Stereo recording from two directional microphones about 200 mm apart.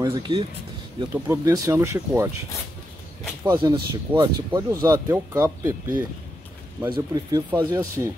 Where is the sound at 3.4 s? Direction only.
20° right (ahead or behind).